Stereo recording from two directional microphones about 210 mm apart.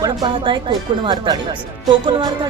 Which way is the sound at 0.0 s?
20° right (ahead or behind).